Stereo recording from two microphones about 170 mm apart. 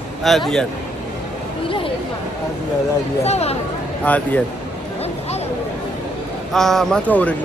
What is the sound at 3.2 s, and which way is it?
Speech, 40° left (ahead or behind).